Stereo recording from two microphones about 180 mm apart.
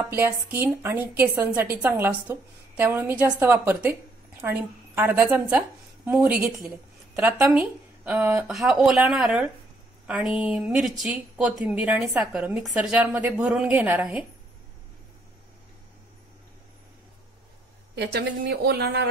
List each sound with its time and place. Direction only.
0.0 s a woman's voice: 10° right (ahead or behind)
17.9 s a woman's voice: 65° right (ahead or behind)